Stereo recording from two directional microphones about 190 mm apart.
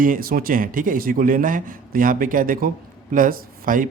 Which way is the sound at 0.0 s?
50° right (ahead or behind).